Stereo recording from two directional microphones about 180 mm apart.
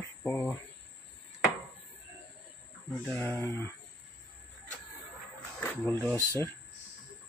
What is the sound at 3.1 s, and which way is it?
Speech, 10° left (ahead or behind).